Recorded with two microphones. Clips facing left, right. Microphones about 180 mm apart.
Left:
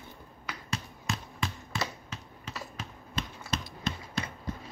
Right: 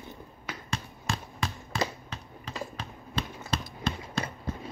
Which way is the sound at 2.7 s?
30° right (ahead or behind).